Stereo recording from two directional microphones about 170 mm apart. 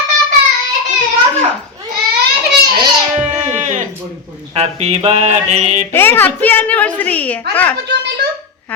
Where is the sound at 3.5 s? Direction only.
45° right (ahead or behind).